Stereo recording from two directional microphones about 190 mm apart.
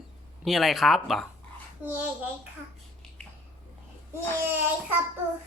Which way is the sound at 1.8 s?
10° right (ahead or behind).